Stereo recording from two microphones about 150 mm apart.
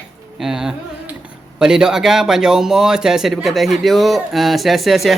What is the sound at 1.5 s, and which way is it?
Speech, 5° right (ahead or behind).